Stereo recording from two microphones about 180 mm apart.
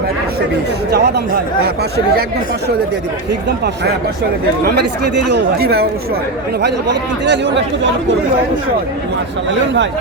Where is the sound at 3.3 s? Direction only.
65° right (ahead or behind).